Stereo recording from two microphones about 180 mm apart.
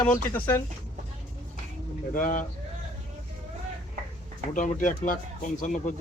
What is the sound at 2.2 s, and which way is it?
Speech, 45° left (ahead or behind).